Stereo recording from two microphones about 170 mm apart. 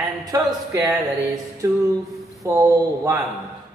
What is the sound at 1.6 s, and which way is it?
Speech, 20° right (ahead or behind).